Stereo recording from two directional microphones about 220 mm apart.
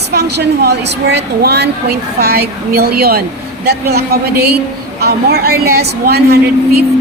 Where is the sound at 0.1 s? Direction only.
50° right (ahead or behind).